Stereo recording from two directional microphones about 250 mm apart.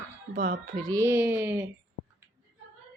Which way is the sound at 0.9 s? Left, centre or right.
Centre.